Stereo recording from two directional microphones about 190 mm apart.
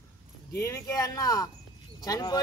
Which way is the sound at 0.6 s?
15° left (ahead or behind).